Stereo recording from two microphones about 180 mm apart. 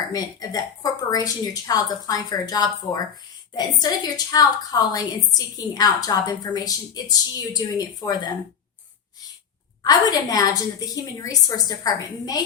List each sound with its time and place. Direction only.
0.1 s a woman's voice: 20° left (ahead or behind)
9.8 s a woman's voice: 20° left (ahead or behind)